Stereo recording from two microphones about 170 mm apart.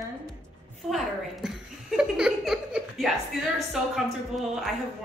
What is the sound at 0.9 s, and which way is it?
Speech, centre (ahead or behind).